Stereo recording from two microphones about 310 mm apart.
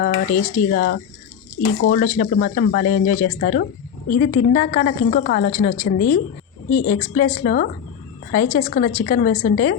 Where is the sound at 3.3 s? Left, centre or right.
Left.